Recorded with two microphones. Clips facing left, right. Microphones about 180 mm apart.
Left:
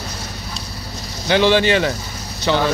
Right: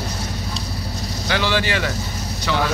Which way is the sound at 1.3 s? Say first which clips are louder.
Left 7 dB; 20° left (ahead or behind).